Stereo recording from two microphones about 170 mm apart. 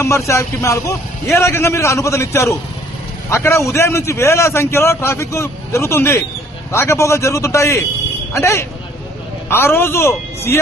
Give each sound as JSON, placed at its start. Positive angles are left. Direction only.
{"t": 0.0, "sound": "a man's voice", "side_deg": 15}